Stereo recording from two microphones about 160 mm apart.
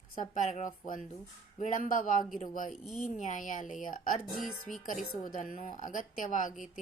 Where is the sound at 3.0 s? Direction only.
50° left (ahead or behind).